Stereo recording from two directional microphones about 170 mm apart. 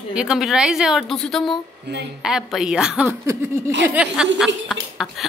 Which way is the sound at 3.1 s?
15° right (ahead or behind).